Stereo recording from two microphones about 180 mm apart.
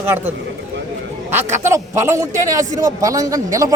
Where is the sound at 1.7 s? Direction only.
15° right (ahead or behind).